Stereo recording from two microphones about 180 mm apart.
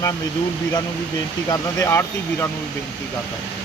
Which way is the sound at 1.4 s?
20° left (ahead or behind).